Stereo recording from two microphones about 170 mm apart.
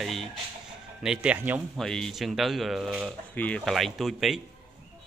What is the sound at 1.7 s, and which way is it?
Speech, 5° left (ahead or behind).